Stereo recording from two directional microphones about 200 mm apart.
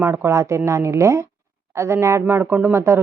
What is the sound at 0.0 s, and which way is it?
A woman's voice, 10° right (ahead or behind).